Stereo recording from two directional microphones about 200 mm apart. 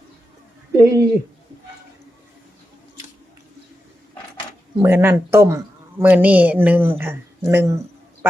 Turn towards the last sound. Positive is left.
turn(degrees=-15)  # may be behind; listen again after turning